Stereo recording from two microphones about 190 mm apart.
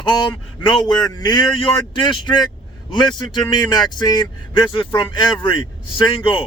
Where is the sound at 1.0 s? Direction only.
20° left (ahead or behind).